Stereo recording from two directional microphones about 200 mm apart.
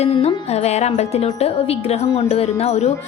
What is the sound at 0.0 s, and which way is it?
Speech, 30° left (ahead or behind).